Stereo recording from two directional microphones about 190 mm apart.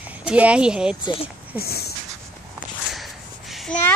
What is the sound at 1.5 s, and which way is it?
Speech, 55° left (ahead or behind).